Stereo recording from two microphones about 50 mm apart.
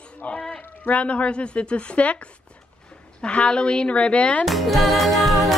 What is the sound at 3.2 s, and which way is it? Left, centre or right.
A woman's voice, left.